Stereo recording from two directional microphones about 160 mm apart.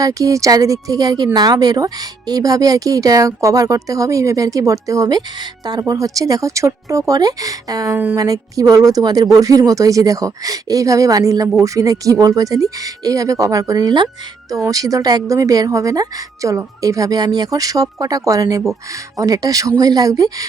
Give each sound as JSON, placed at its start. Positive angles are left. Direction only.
{"t": 0.0, "sound": "a woman's voice", "side_deg": -20}